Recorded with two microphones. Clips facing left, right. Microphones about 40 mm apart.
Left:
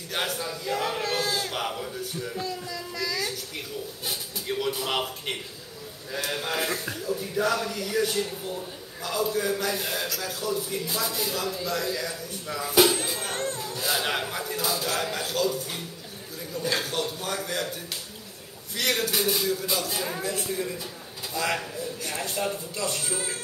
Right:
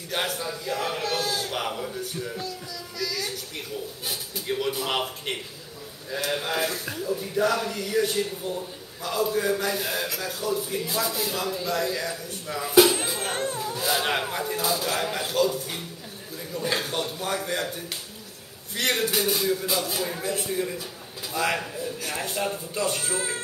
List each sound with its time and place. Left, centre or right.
0.1 s music: centre
1.2 s crowd: left
1.5 s music: centre
2.7 s a sound: centre
4.0 s a man's voice: centre
6.3 s music: centre
6.9 s speech: centre
13.3 s a sound: centre
13.7 s speech: centre
18.9 s speech: centre
20.2 s music: centre
20.4 s a man's voice: centre